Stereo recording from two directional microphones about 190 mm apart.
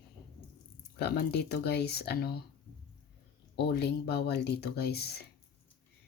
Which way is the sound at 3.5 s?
55° left (ahead or behind).